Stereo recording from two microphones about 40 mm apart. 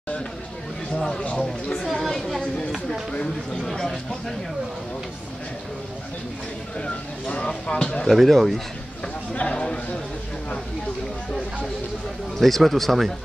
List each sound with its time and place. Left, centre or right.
0.9 s speech: centre
3.6 s speech: centre
6.8 s a sound: left
8.1 s speech: centre
9.3 s a sound: left
12.4 s speech: centre